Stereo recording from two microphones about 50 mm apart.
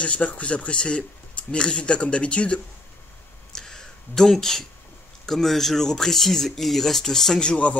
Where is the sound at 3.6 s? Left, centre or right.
Centre.